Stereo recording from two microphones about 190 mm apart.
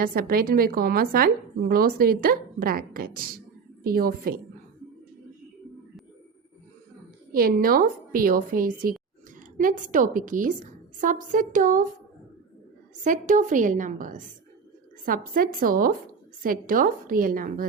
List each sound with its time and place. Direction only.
0.0 s a woman's voice: 50° right (ahead or behind)
7.3 s a woman's voice: 50° right (ahead or behind)
13.1 s a woman's voice: 40° right (ahead or behind)